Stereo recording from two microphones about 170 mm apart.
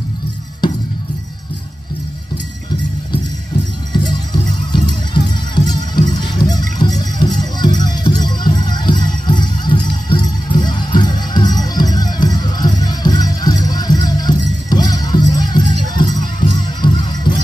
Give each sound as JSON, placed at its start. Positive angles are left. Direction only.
{"t": 3.9, "sound": "music", "side_deg": 25}